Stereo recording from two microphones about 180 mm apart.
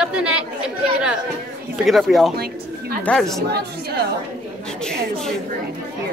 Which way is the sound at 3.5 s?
65° right (ahead or behind).